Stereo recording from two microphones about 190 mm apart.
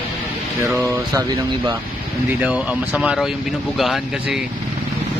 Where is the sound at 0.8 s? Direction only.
15° right (ahead or behind).